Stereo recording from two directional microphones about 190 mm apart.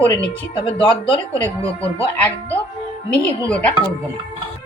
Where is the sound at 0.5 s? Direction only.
30° left (ahead or behind).